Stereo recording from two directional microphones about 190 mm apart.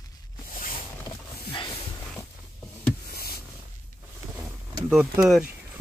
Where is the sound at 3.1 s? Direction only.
55° left (ahead or behind).